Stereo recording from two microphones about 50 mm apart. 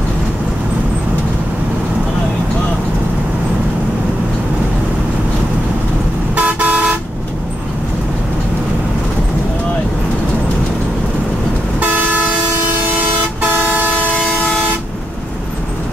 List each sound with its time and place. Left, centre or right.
6.3 s vehicle: right
11.8 s toot: right